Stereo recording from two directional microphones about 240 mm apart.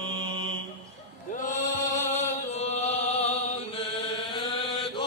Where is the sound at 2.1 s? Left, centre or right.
Left.